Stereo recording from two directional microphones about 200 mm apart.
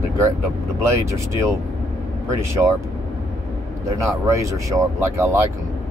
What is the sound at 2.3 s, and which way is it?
Speech, 15° right (ahead or behind).